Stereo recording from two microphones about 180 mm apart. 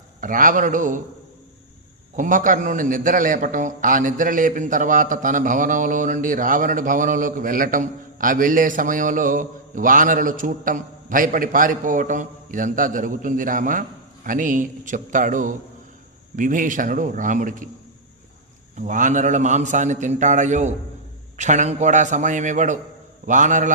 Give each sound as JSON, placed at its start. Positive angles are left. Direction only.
{"t": 0.2, "sound": "a man's voice", "side_deg": -50}
{"t": 2.1, "sound": "a man's voice", "side_deg": -45}
{"t": 18.8, "sound": "a man's voice", "side_deg": -45}